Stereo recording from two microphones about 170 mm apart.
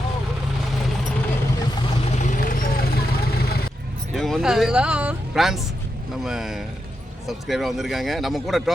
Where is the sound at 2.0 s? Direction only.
45° left (ahead or behind); by 3.7 s 65° left (ahead or behind).